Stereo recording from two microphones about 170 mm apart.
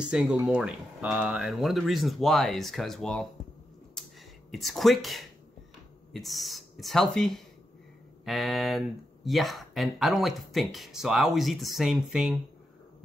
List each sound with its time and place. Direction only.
0.0 s speech: 5° right (ahead or behind)
4.0 s a sound: centre (ahead or behind)
4.5 s speech: centre (ahead or behind)